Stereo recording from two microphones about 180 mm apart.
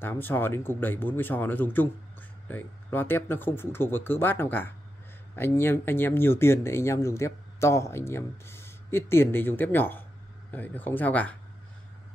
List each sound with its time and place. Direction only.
0.0 s speech: 10° left (ahead or behind)